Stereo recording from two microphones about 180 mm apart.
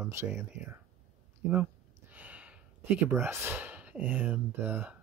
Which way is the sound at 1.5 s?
10° right (ahead or behind).